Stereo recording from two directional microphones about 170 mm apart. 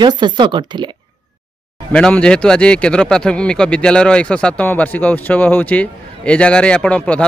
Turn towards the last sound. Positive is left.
turn(degrees=5)  # may be behind; listen again after turning